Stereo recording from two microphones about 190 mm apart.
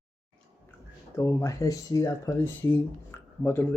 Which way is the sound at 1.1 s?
15° left (ahead or behind).